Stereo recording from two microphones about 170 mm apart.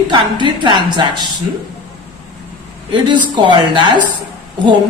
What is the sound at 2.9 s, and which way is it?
Speech, 25° right (ahead or behind).